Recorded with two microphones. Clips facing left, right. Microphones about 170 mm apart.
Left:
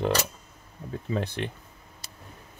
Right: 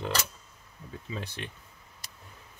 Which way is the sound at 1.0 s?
55° left (ahead or behind).